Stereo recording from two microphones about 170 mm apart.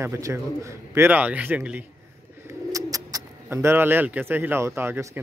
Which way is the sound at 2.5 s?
20° right (ahead or behind).